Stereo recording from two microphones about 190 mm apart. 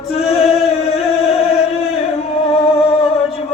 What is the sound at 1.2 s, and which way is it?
Singing, 30° left (ahead or behind).